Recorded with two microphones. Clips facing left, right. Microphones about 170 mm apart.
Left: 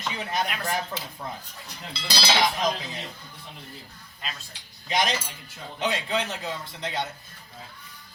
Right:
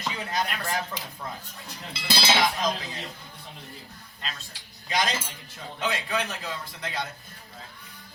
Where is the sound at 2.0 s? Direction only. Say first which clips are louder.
Right 1 dB; 25° right (ahead or behind).